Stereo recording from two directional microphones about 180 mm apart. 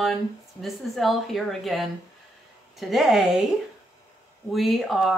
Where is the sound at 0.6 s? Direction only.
Centre (ahead or behind).